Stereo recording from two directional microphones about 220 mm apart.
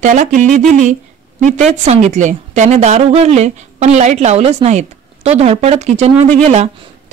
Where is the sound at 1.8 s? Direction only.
30° right (ahead or behind).